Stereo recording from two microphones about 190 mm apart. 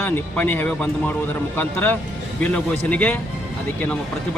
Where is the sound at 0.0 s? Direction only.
10° left (ahead or behind).